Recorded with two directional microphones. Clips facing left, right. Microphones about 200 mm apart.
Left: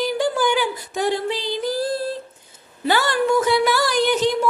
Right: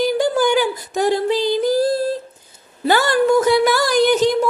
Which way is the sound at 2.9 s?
45° right (ahead or behind).